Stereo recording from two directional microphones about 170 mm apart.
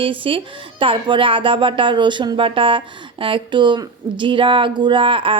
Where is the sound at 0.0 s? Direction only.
30° right (ahead or behind).